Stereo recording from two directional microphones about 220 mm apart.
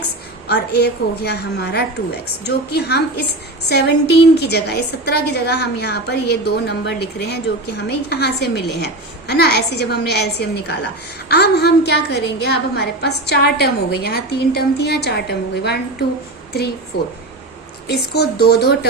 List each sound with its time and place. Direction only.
0.4 s a woman's voice: 45° left (ahead or behind)